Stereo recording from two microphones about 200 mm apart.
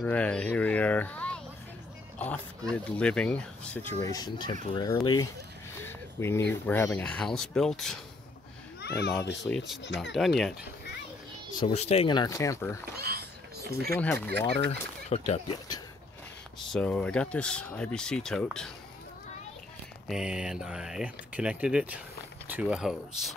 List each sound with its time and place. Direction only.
0.0 s speech: 5° left (ahead or behind)
2.1 s a sound: 5° left (ahead or behind)
2.7 s speech: 5° left (ahead or behind)
8.8 s a child's voice: 55° left (ahead or behind)
9.4 s speech: centre (ahead or behind)
11.7 s speech: 30° left (ahead or behind); by 12.7 s 15° left (ahead or behind)
13.0 s a sound: 50° right (ahead or behind)
13.9 s speech: 10° left (ahead or behind)
15.0 s speech: 30° left (ahead or behind)
16.7 s speech: 5° left (ahead or behind)
20.1 s speech: 5° right (ahead or behind)